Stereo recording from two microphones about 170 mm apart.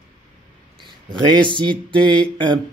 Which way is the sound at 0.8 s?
30° right (ahead or behind).